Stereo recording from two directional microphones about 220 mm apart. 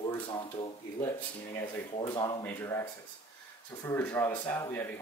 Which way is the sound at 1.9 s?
20° left (ahead or behind).